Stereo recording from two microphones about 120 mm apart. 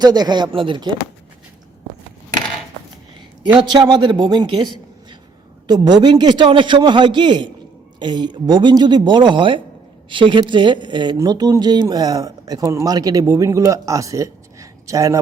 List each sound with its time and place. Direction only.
0.0 s speech: 35° right (ahead or behind)
3.6 s speech: 35° right (ahead or behind)